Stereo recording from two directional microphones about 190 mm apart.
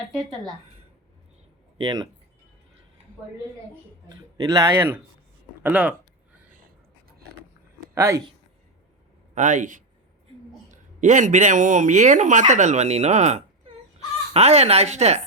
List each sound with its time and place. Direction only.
0.1 s a woman's voice: centre (ahead or behind)
1.8 s speech: 20° right (ahead or behind)
4.1 s speech: 20° right (ahead or behind)
7.8 s a sound: 15° right (ahead or behind)
9.3 s speech: 40° right (ahead or behind)